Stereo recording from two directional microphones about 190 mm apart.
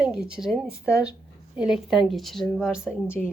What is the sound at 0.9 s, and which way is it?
Speech, 15° left (ahead or behind).